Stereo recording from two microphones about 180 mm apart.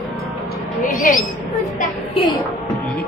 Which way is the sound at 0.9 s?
45° left (ahead or behind).